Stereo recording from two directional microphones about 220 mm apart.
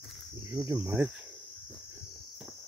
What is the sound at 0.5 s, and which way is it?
Cricket, 15° right (ahead or behind).